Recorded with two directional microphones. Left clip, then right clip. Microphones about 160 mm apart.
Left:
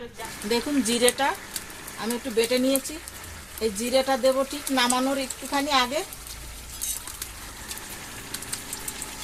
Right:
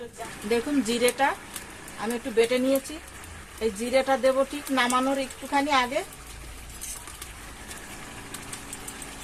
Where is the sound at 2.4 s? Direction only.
30° left (ahead or behind).